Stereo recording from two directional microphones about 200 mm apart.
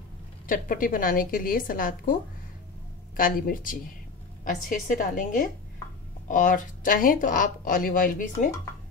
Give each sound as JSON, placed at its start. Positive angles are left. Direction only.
{"t": 0.5, "sound": "a woman's voice", "side_deg": 45}
{"t": 3.2, "sound": "a woman's voice", "side_deg": 45}